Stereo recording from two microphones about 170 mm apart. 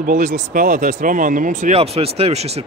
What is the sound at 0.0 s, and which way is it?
A man's voice, 50° right (ahead or behind).